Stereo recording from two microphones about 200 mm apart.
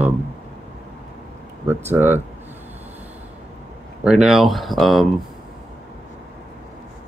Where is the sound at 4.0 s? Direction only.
5° right (ahead or behind).